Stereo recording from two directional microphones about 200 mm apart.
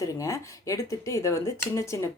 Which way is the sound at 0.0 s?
15° left (ahead or behind).